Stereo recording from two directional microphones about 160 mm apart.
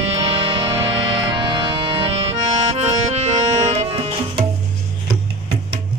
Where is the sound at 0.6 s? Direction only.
30° right (ahead or behind).